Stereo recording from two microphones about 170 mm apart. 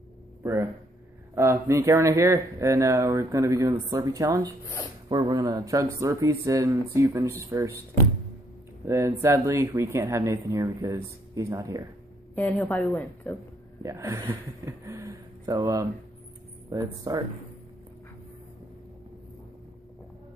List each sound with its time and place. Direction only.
0.4 s speech: 15° right (ahead or behind)
8.8 s speech: 15° right (ahead or behind)
12.4 s a woman's voice: 10° left (ahead or behind)
13.8 s speech: 15° right (ahead or behind)